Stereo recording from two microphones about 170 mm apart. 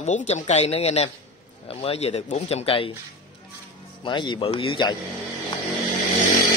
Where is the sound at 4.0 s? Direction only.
25° left (ahead or behind).